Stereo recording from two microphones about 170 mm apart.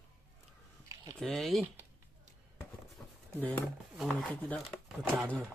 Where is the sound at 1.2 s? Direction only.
Centre (ahead or behind).